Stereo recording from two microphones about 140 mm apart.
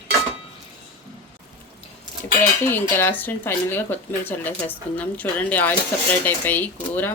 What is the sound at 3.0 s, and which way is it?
Speech, 15° left (ahead or behind).